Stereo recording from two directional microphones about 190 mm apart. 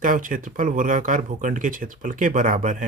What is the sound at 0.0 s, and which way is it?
Speech, 45° right (ahead or behind).